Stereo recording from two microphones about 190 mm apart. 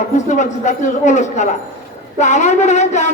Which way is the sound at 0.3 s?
40° left (ahead or behind).